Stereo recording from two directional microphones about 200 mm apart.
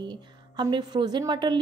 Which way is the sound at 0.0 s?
25° right (ahead or behind).